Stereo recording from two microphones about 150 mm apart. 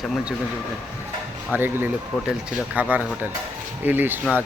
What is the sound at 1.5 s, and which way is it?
Speech, 15° right (ahead or behind).